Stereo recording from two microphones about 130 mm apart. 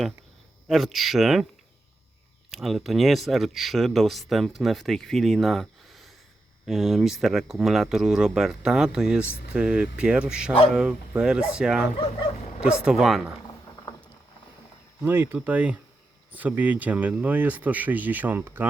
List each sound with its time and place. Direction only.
0.7 s speech: centre (ahead or behind)
2.5 s speech: centre (ahead or behind)
15.0 s speech: 15° right (ahead or behind)